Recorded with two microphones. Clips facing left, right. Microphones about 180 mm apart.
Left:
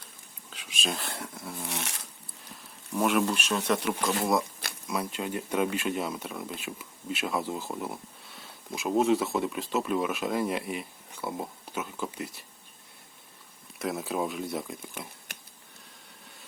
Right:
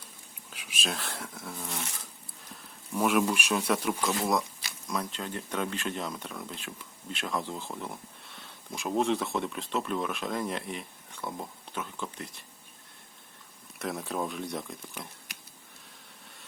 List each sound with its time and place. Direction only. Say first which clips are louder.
0.5 s speech: left 2 dB; 5° right (ahead or behind)
1.7 s a sound: left 2 dB; 80° left
2.9 s speech: even; centre (ahead or behind)
13.7 s speech: left 3 dB; centre (ahead or behind)